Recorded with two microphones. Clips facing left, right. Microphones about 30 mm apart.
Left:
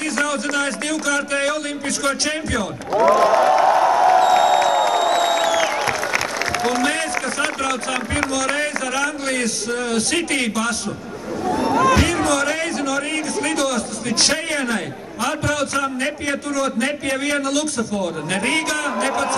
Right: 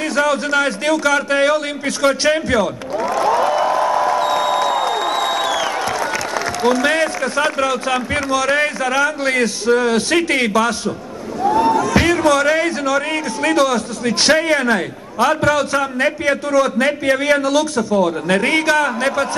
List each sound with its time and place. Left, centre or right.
0.0 s a man's voice: centre
3.0 s speech: centre
3.3 s music: centre
6.8 s a sound: centre
8.5 s a man's voice: centre
11.9 s a sound: centre
12.2 s a man's voice: centre